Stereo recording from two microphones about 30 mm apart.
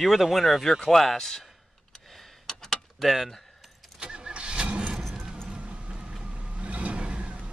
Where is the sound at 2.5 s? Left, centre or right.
Centre.